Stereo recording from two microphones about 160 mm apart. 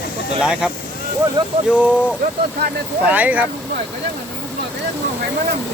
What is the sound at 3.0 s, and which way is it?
Speech, 10° right (ahead or behind).